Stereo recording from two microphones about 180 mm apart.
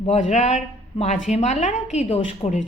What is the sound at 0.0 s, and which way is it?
A man's voice, 40° left (ahead or behind).